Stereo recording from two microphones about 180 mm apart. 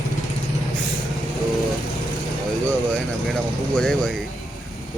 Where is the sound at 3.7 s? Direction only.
5° left (ahead or behind).